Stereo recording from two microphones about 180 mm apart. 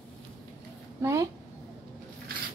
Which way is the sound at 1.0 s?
15° right (ahead or behind).